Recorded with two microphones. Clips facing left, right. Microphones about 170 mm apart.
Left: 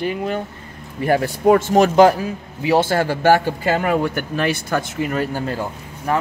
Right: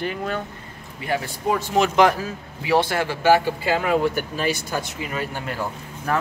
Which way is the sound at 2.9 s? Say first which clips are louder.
Left 3 dB; 45° left (ahead or behind).